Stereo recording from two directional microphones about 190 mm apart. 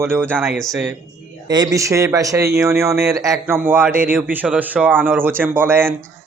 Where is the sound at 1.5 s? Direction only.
20° right (ahead or behind).